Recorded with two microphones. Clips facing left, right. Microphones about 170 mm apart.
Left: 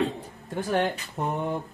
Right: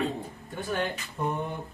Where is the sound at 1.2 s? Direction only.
90° left.